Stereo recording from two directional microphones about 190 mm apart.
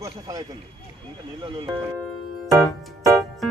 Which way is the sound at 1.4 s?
25° right (ahead or behind).